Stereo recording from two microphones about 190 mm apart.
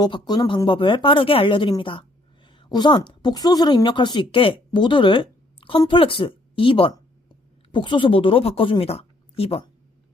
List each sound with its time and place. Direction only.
0.0 s a woman's voice: 20° left (ahead or behind)